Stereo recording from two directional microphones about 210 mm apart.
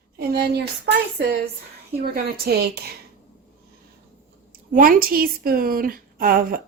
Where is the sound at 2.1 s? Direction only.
45° right (ahead or behind).